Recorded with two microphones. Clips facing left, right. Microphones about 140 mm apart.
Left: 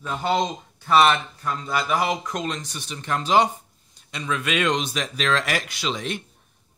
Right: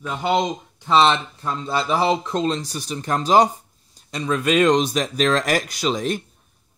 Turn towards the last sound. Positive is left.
turn(degrees=-40)  # may be behind; listen again after turning